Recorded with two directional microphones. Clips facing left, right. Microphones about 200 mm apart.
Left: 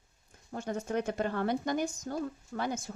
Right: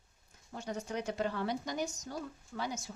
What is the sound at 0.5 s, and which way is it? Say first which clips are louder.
Speech: left 5 dB; 50° left (ahead or behind).